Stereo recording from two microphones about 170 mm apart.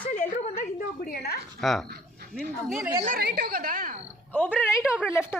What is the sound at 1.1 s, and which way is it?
Speech, 65° left (ahead or behind).